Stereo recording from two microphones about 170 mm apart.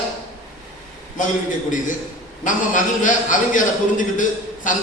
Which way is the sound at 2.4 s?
50° left (ahead or behind).